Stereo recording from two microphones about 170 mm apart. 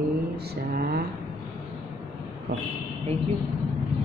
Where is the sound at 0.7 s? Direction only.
60° right (ahead or behind).